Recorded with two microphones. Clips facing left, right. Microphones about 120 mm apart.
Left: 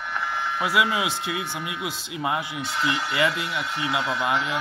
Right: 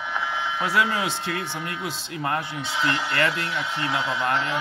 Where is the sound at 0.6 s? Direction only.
10° left (ahead or behind).